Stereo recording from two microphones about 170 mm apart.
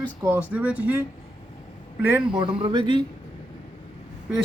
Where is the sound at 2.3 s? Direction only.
30° right (ahead or behind).